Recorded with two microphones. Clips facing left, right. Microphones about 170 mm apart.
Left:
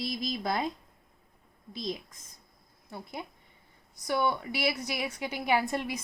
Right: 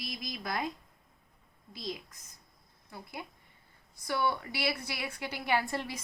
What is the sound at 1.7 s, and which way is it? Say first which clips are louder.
A woman's voice: left 4 dB; 20° left (ahead or behind).